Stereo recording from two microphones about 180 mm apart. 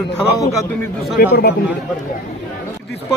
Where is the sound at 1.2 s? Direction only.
60° left (ahead or behind).